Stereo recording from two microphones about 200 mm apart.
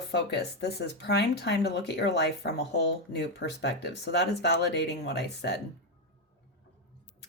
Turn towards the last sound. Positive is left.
turn(degrees=55)  # may be behind; listen again after turning